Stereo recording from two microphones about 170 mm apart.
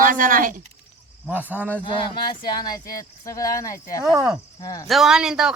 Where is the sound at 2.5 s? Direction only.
25° left (ahead or behind).